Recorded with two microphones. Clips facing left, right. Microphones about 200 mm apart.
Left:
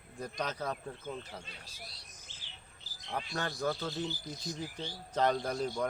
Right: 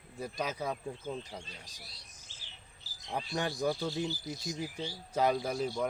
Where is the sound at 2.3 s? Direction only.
20° left (ahead or behind).